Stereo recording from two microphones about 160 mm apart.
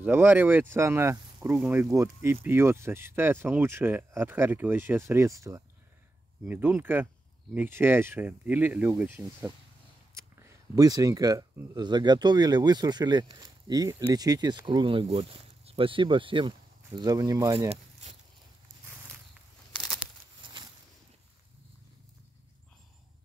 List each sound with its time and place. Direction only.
0.0 s speech: 10° right (ahead or behind)
19.8 s crumpling: centre (ahead or behind)